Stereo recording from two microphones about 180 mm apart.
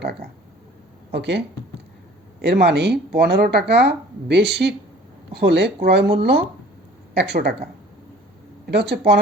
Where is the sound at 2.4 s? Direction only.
70° right (ahead or behind).